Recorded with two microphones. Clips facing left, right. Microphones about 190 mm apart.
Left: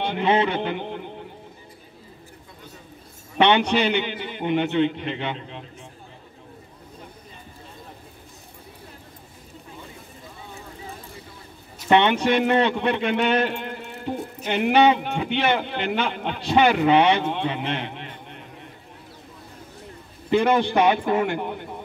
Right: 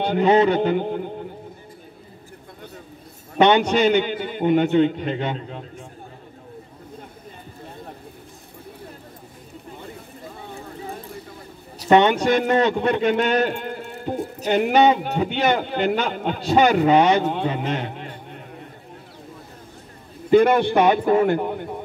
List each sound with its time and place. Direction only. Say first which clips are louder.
0.0 s music: right 5 dB; 40° right (ahead or behind)
3.3 s a man's voice: right 3 dB; 40° right (ahead or behind)
11.8 s a man's voice: right 3 dB; 40° right (ahead or behind)
20.2 s a man's voice: right 4 dB; 55° right (ahead or behind)